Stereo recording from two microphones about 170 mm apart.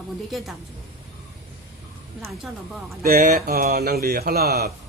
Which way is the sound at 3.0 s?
55° right (ahead or behind).